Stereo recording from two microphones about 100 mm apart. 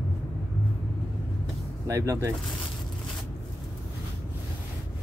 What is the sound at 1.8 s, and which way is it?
Speech, 30° right (ahead or behind).